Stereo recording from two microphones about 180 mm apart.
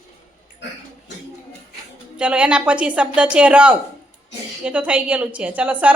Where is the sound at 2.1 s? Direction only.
5° right (ahead or behind).